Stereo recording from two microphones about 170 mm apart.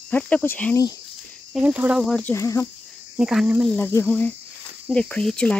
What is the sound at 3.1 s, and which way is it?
Speech, 5° right (ahead or behind).